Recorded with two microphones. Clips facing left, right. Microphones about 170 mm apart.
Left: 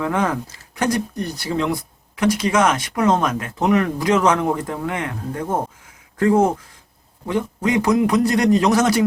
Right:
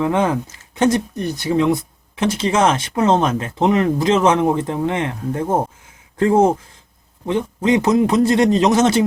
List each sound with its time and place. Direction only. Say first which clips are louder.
0.0 s speech: right 3 dB; 20° right (ahead or behind)